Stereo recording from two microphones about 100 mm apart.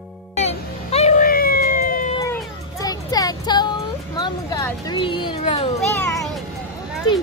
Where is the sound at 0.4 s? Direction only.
90° left.